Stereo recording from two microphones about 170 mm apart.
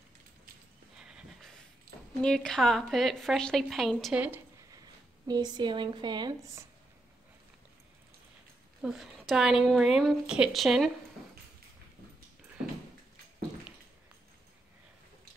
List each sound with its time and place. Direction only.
1.0 s a sound: centre (ahead or behind)
2.2 s a woman's voice: 5° left (ahead or behind)
5.2 s a woman's voice: 25° right (ahead or behind)
8.8 s a woman's voice: centre (ahead or behind)